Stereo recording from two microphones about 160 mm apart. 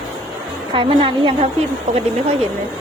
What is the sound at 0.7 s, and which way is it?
Speech, 30° right (ahead or behind).